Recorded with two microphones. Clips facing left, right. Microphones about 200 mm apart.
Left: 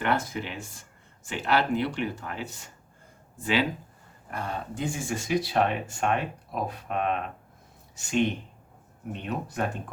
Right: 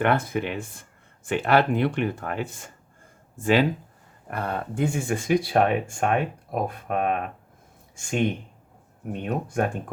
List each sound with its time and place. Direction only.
0.0 s speech: 55° right (ahead or behind)
4.3 s speech: 60° right (ahead or behind)